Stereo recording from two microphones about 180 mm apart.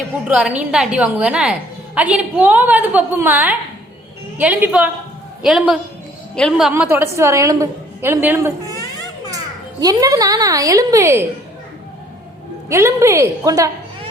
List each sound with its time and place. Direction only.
0.3 s a woman's voice: 5° right (ahead or behind)
6.8 s a woman's voice: 15° right (ahead or behind)
9.8 s a woman's voice: 20° right (ahead or behind)
12.6 s a woman's voice: 15° right (ahead or behind)